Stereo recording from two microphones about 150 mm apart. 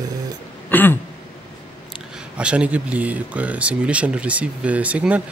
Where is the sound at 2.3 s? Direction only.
10° right (ahead or behind).